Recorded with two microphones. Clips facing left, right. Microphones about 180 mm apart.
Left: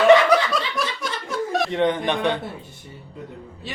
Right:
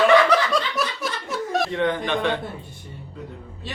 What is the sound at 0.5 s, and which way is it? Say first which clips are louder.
Laughter: right 1 dB; centre (ahead or behind).